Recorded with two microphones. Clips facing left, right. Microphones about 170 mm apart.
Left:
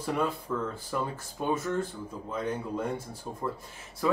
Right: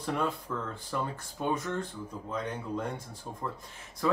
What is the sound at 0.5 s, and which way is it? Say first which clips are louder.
Speech: left 3 dB; 10° left (ahead or behind).